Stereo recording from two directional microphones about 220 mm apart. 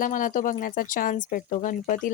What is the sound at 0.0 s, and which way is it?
Speech, 35° left (ahead or behind).